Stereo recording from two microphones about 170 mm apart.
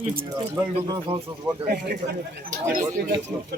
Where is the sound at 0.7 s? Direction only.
30° right (ahead or behind).